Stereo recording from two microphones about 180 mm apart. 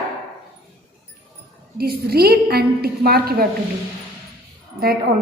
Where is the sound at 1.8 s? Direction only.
60° right (ahead or behind).